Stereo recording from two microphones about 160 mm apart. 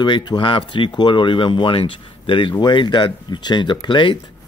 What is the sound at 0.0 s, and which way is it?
Speech, 30° left (ahead or behind).